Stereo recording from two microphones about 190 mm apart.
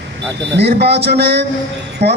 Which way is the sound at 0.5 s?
60° right (ahead or behind).